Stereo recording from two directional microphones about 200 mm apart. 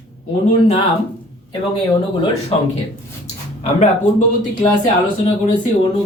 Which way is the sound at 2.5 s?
30° left (ahead or behind).